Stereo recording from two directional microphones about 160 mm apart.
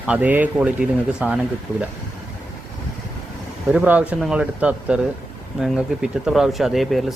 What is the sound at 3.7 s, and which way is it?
Speech, 10° right (ahead or behind).